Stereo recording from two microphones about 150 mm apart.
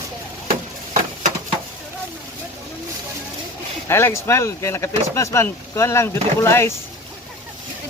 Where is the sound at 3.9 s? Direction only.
15° left (ahead or behind).